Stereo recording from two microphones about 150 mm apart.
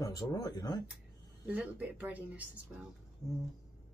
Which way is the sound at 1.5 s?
10° right (ahead or behind).